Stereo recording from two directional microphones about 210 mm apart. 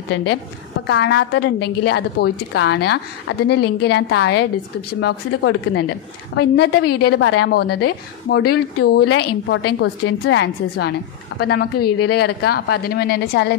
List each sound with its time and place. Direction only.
0.1 s a woman's voice: 75° left (ahead or behind)
0.8 s a woman's voice: 55° left (ahead or behind)
6.3 s a woman's voice: 50° left (ahead or behind)
9.1 s a woman's voice: 60° left (ahead or behind)